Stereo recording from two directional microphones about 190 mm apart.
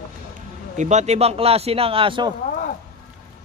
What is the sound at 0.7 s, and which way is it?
A man's voice, 40° right (ahead or behind).